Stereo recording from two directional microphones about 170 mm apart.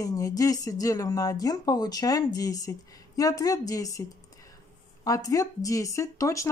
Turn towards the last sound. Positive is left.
turn(degrees=20)  # may be behind; listen again after turning